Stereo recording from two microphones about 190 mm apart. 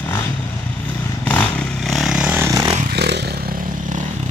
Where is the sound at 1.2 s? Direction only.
10° left (ahead or behind); by 2.8 s 15° right (ahead or behind).